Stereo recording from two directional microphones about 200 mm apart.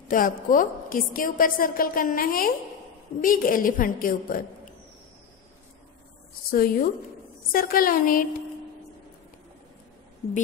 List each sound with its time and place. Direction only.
0.1 s a woman's voice: 45° left (ahead or behind)
6.5 s a woman's voice: 50° left (ahead or behind)